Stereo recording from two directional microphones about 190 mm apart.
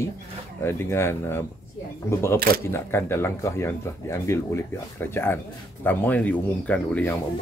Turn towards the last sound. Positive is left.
turn(degrees=5)  # may be behind; listen again after turning